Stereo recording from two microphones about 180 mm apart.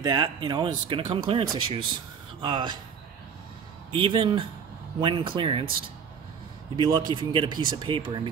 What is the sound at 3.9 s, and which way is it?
A man's voice, 30° right (ahead or behind).